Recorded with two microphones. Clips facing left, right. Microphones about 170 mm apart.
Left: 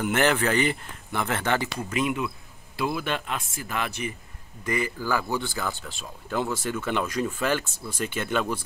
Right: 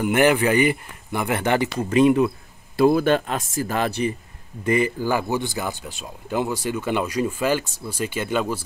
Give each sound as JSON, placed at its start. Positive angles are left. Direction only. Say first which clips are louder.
{"t": 0.0, "sound": "speech", "louder": "right 5 dB", "side_deg": -10}
{"t": 1.8, "sound": "speech", "louder": "right 10 dB", "side_deg": -35}
{"t": 4.6, "sound": "speech", "louder": "right 7 dB", "side_deg": -25}